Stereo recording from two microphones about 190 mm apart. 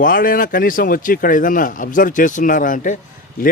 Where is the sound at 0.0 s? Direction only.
45° left (ahead or behind).